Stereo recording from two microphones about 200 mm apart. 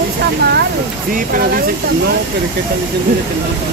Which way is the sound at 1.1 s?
45° right (ahead or behind).